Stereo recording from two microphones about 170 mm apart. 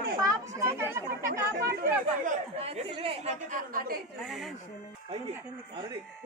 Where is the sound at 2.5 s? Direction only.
35° right (ahead or behind); by 4.0 s 55° right (ahead or behind).